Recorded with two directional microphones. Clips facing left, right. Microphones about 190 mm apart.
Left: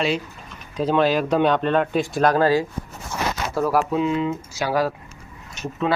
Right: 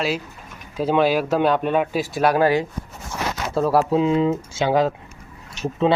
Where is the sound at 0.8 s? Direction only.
10° right (ahead or behind).